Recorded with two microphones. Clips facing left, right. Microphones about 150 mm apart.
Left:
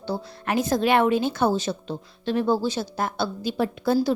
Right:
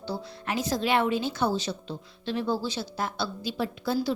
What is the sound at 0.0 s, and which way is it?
A woman's voice, 55° left (ahead or behind).